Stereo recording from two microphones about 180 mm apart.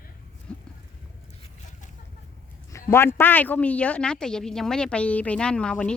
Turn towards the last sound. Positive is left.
turn(degrees=5)  # may be behind; listen again after turning